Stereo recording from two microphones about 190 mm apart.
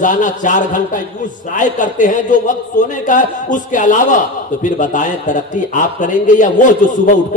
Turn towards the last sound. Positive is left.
turn(degrees=45)  # may be behind; listen again after turning